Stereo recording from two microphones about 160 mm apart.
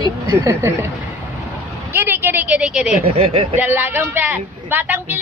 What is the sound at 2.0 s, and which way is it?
Speech, 10° right (ahead or behind).